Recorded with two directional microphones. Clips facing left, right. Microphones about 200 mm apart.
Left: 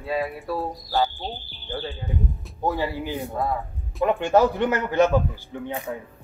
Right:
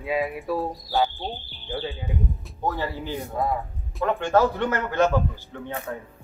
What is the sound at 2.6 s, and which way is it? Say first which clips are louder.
A man's voice: left 3 dB; 10° left (ahead or behind).